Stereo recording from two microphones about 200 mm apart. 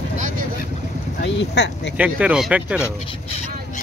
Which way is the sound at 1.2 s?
60° left (ahead or behind).